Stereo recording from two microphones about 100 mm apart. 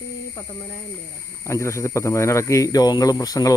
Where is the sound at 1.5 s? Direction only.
30° left (ahead or behind).